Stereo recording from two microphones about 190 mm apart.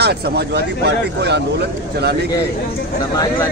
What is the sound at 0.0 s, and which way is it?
Speech, 60° right (ahead or behind).